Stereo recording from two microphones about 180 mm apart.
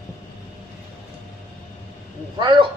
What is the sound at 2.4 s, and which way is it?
Owl, 25° right (ahead or behind).